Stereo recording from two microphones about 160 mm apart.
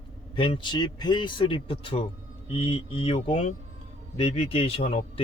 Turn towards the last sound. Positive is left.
turn(degrees=35)  # may be behind; listen again after turning